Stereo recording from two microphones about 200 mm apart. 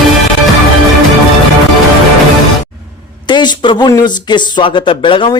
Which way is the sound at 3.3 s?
20° left (ahead or behind).